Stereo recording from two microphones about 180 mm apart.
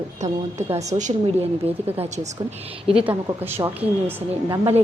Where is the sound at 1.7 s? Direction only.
10° right (ahead or behind).